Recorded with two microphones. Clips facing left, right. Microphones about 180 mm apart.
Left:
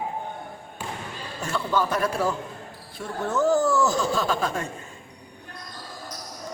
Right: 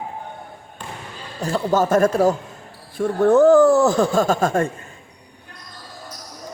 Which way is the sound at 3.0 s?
55° right (ahead or behind).